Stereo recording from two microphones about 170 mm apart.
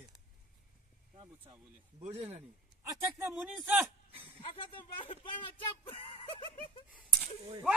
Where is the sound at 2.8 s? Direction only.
15° right (ahead or behind).